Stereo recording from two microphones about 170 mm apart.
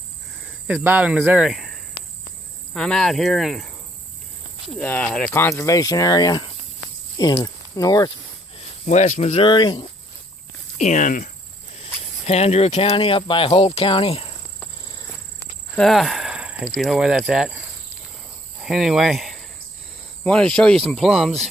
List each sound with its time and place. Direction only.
0.8 s speech: 10° right (ahead or behind)
2.7 s speech: 5° left (ahead or behind); by 8.1 s 20° left (ahead or behind)
8.5 s speech: 40° left (ahead or behind)
10.8 s speech: 45° left (ahead or behind)
12.3 s speech: 40° left (ahead or behind)
15.7 s a sound: centre (ahead or behind)
16.6 s speech: centre (ahead or behind)
18.6 s speech: centre (ahead or behind)